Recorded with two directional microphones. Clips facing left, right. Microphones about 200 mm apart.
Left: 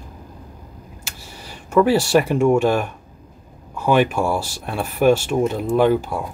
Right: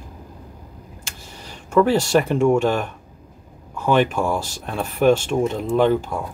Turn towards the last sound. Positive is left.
turn(degrees=10)  # may be behind; listen again after turning